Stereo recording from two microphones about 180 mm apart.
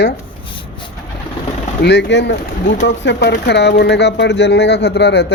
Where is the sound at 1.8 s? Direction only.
70° left (ahead or behind).